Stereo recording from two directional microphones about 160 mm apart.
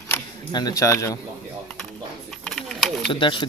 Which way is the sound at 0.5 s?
25° left (ahead or behind).